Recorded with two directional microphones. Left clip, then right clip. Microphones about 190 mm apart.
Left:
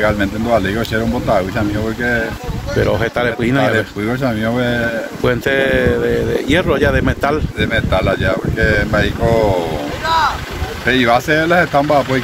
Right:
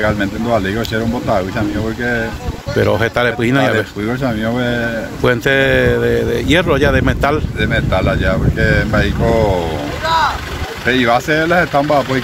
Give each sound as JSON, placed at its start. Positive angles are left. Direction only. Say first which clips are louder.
{"t": 0.0, "sound": "speech", "louder": "left 1 dB", "side_deg": 0}
{"t": 2.8, "sound": "speech", "louder": "right 2 dB", "side_deg": -15}
{"t": 3.7, "sound": "speech", "louder": "even", "side_deg": 0}
{"t": 5.2, "sound": "speech", "louder": "right 2 dB", "side_deg": -15}
{"t": 10.0, "sound": "vehicle", "louder": "even", "side_deg": -35}
{"t": 10.9, "sound": "speech", "louder": "even", "side_deg": -5}